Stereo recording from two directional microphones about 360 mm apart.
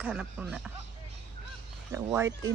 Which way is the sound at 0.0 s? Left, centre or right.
Centre.